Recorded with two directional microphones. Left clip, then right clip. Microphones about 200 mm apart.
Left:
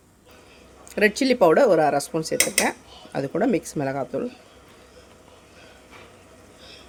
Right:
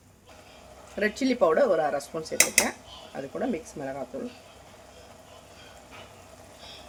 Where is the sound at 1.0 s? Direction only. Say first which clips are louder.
Left 6 dB; 45° left (ahead or behind).